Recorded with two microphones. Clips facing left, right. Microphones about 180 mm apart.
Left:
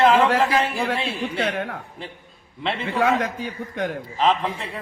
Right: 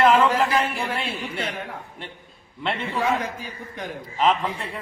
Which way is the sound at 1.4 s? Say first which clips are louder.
Left 6 dB; 70° left (ahead or behind).